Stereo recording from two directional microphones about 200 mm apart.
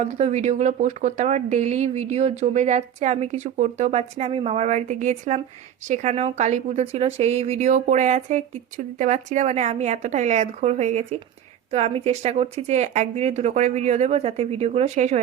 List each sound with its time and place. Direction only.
0.0 s speech: 35° right (ahead or behind)